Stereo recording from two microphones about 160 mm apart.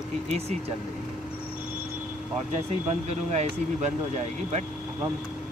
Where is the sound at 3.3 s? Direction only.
45° right (ahead or behind).